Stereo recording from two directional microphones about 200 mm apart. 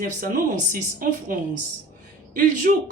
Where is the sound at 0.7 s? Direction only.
40° right (ahead or behind).